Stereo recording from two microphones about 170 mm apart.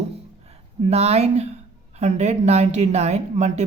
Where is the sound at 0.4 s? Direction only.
40° right (ahead or behind).